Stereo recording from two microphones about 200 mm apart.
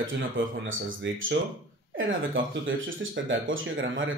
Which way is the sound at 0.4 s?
75° right (ahead or behind).